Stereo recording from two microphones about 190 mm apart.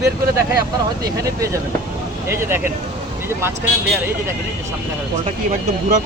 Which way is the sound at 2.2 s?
10° right (ahead or behind).